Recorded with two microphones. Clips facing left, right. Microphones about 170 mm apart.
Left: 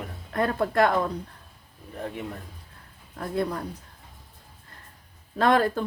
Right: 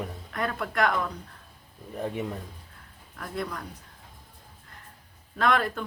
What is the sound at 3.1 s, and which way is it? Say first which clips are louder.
Speech: left 6 dB; 30° left (ahead or behind).